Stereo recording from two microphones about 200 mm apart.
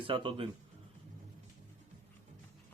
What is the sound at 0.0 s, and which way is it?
Speech, 25° right (ahead or behind).